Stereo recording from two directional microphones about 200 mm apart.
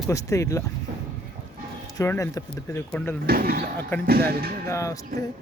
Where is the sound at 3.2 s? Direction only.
50° right (ahead or behind).